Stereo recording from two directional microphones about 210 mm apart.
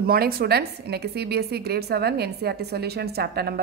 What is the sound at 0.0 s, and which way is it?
A woman's voice, 45° right (ahead or behind).